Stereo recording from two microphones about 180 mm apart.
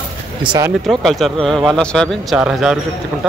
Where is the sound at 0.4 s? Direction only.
25° right (ahead or behind).